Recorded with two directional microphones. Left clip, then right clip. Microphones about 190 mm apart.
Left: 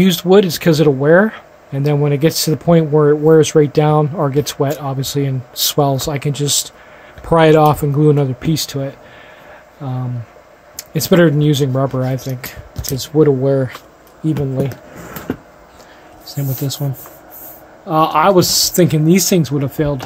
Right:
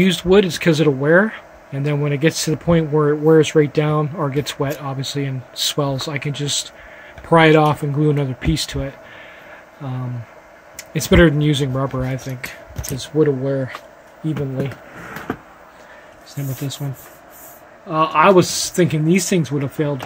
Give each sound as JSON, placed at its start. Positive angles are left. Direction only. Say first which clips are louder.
{"t": 0.0, "sound": "speech", "louder": "left 3 dB", "side_deg": 10}
{"t": 10.8, "sound": "speech", "louder": "left 2 dB", "side_deg": 5}
{"t": 13.2, "sound": "speech", "louder": "left 5 dB", "side_deg": 25}
{"t": 16.3, "sound": "speech", "louder": "left 5 dB", "side_deg": 15}
{"t": 17.8, "sound": "speech", "louder": "left 2 dB", "side_deg": 20}